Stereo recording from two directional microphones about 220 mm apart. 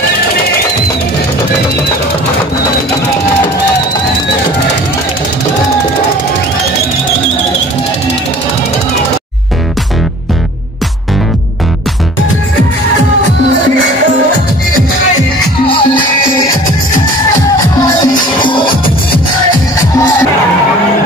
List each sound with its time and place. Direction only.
15.6 s music: 20° left (ahead or behind)
17.8 s music: 20° left (ahead or behind)